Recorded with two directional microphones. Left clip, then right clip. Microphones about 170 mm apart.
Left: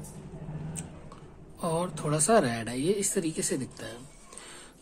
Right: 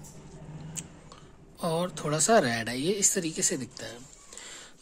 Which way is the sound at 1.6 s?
25° right (ahead or behind).